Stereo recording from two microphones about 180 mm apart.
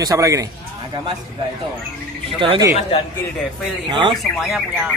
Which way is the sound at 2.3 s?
30° right (ahead or behind).